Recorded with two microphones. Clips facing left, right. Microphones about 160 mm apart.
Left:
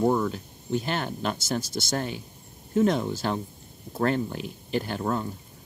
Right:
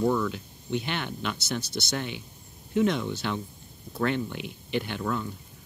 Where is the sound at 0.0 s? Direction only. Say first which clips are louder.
Left 2 dB; 45° left (ahead or behind).